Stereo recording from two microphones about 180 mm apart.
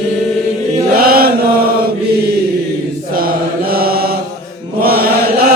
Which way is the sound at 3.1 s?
55° right (ahead or behind).